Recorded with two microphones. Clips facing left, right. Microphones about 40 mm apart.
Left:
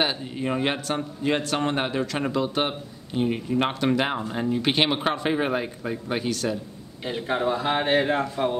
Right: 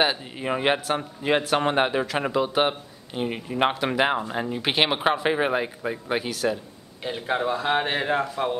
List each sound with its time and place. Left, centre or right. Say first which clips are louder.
0.0 s speech: right 2 dB; centre